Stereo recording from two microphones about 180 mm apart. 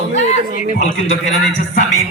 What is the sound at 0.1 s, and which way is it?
A man's voice, 40° left (ahead or behind).